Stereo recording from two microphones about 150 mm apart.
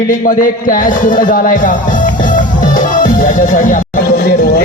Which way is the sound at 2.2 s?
60° left (ahead or behind).